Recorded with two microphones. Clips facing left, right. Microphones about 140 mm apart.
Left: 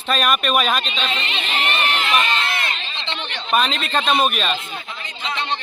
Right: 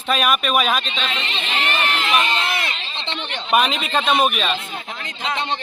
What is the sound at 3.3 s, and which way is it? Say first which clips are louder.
Speech: right 2 dB; 15° right (ahead or behind).